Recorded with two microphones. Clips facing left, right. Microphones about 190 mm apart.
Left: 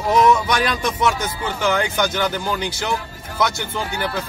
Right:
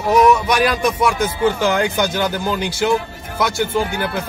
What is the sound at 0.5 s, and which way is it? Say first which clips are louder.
Speech: right 4 dB; 10° right (ahead or behind).